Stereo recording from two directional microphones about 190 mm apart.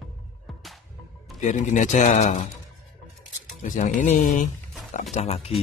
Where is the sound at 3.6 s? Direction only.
40° left (ahead or behind).